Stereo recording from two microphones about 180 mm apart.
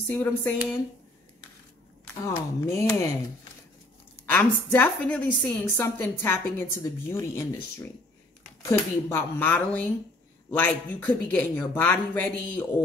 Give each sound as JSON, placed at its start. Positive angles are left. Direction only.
{"t": 0.1, "sound": "a woman's voice", "side_deg": 10}
{"t": 2.2, "sound": "a woman's voice", "side_deg": 15}
{"t": 4.3, "sound": "a woman's voice", "side_deg": 10}
{"t": 8.6, "sound": "a woman's voice", "side_deg": 10}